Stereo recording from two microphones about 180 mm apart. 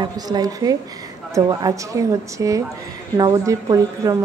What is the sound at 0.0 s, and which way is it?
A woman's voice, 20° right (ahead or behind).